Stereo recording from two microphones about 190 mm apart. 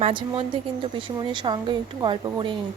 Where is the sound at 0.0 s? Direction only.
25° right (ahead or behind).